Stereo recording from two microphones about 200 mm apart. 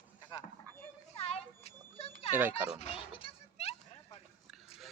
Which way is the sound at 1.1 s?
30° left (ahead or behind).